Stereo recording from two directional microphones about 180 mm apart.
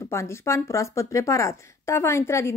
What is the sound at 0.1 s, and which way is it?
Speech, 15° left (ahead or behind).